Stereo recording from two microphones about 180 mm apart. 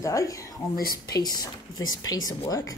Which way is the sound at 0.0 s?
15° left (ahead or behind).